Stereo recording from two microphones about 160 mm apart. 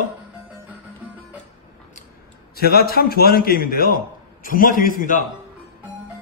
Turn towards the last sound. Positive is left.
turn(degrees=55)  # may be behind; listen again after turning